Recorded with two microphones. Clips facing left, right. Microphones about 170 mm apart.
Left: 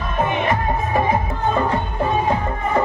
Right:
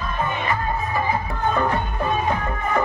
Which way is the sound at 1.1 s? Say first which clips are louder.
Left 3 dB; 25° left (ahead or behind).